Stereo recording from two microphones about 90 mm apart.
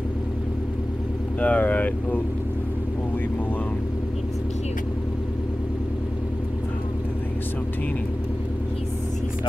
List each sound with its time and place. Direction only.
1.4 s speech: 15° left (ahead or behind)